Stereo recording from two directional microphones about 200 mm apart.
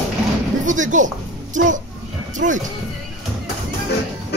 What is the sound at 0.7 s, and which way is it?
Speech, 40° right (ahead or behind).